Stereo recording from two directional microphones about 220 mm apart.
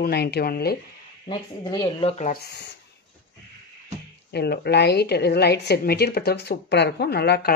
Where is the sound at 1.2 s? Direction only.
20° left (ahead or behind).